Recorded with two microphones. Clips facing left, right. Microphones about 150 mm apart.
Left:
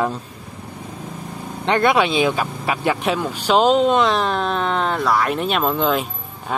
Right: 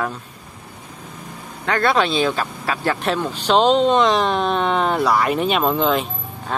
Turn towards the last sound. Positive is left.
turn(degrees=5)  # may be behind; listen again after turning